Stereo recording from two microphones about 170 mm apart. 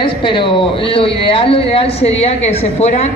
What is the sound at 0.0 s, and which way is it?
A woman's voice, 30° left (ahead or behind).